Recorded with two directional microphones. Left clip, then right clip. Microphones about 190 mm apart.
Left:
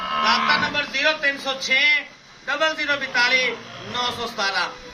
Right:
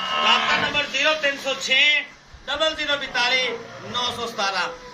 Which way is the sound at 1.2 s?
50° left (ahead or behind).